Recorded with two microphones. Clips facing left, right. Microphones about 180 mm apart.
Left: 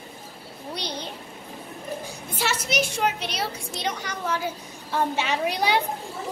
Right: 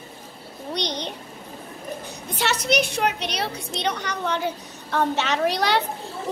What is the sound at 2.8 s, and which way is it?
Speech, 65° right (ahead or behind).